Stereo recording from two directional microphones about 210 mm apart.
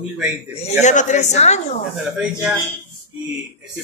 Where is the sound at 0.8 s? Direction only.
35° left (ahead or behind).